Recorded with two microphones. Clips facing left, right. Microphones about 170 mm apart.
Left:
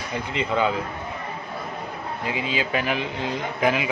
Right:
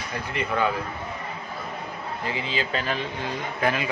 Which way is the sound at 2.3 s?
15° left (ahead or behind).